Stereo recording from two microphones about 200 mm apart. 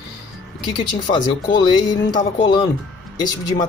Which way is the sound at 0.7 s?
25° left (ahead or behind).